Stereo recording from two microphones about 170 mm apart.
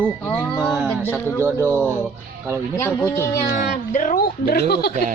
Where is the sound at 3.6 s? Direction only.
50° left (ahead or behind); by 4.9 s 70° left (ahead or behind).